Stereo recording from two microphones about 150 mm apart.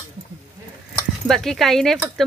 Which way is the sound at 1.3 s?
Centre (ahead or behind).